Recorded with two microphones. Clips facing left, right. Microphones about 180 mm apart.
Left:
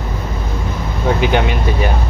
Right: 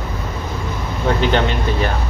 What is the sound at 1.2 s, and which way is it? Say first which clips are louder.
Speech: left 1 dB; 10° left (ahead or behind).